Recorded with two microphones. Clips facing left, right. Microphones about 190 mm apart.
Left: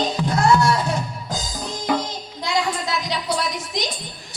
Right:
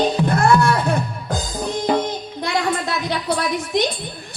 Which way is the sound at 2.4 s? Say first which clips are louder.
Right 2 dB; 60° right (ahead or behind).